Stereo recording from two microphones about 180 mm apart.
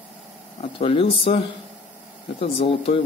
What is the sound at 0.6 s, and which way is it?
Speech, 30° left (ahead or behind).